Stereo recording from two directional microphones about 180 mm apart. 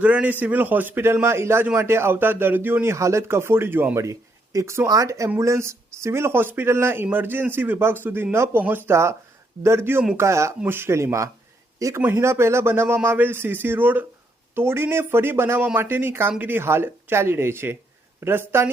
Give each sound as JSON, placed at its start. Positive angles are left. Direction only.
{"t": 0.0, "sound": "a man's voice", "side_deg": -10}